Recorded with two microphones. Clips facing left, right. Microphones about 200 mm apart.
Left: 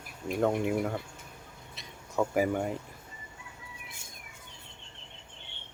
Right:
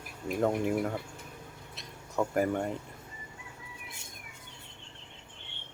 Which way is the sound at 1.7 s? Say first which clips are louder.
Left 1 dB; centre (ahead or behind).